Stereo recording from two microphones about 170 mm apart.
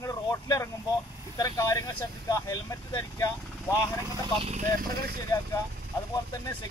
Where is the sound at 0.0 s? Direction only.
20° left (ahead or behind).